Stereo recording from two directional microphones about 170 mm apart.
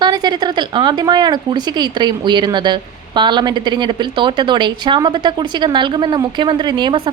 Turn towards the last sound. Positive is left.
turn(degrees=-25)  # may be behind; listen again after turning